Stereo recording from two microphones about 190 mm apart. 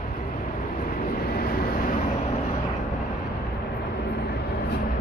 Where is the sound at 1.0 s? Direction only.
50° left (ahead or behind).